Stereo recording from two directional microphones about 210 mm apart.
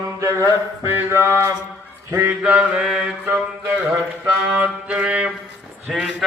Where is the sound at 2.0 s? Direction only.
10° right (ahead or behind).